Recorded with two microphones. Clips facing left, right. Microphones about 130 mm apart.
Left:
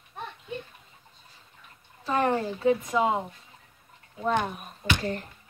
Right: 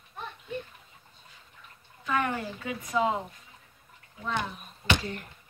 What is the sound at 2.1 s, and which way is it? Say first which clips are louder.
A woman's voice: left 4 dB; 35° left (ahead or behind).